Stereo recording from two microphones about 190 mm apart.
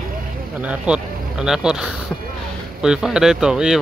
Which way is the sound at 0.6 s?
5° right (ahead or behind).